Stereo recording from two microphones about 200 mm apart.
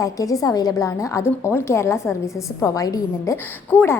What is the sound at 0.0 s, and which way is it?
A woman's voice, 15° left (ahead or behind).